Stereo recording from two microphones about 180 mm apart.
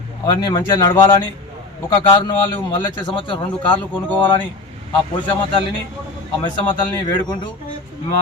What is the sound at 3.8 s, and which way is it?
Speech, 10° left (ahead or behind).